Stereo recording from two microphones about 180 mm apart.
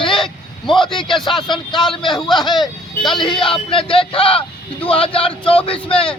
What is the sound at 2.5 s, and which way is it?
Speech, centre (ahead or behind).